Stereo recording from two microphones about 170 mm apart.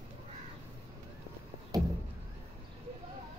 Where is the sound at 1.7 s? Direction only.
20° right (ahead or behind).